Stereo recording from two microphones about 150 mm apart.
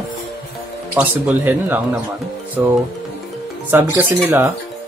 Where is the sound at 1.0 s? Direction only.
10° right (ahead or behind).